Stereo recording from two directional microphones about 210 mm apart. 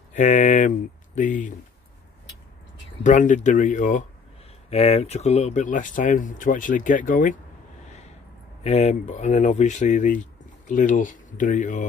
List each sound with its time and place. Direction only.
0.1 s speech: 35° left (ahead or behind)
3.0 s speech: 35° left (ahead or behind)
8.6 s speech: 30° left (ahead or behind)